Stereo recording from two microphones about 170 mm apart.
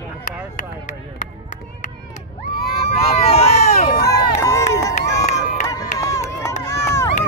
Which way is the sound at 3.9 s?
65° left (ahead or behind).